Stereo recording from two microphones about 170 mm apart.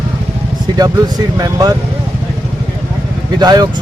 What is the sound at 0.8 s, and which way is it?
Speech, 25° right (ahead or behind).